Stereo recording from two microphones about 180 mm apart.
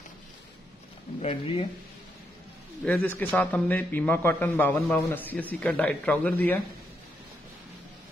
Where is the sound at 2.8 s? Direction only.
10° left (ahead or behind).